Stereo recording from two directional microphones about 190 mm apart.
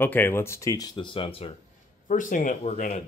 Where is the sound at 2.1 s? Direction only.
45° left (ahead or behind).